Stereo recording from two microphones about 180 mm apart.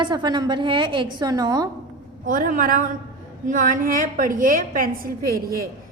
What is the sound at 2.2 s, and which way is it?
A woman's voice, 50° right (ahead or behind).